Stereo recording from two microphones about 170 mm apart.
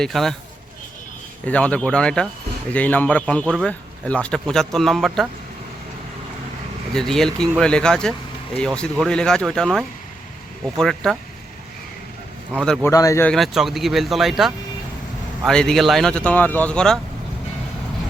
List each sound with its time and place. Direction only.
0.0 s speech: centre (ahead or behind)
1.5 s speech: 5° left (ahead or behind)
6.9 s speech: 5° left (ahead or behind)
12.5 s speech: 5° left (ahead or behind)
12.9 s speech: 20° left (ahead or behind)
13.2 s speech: centre (ahead or behind)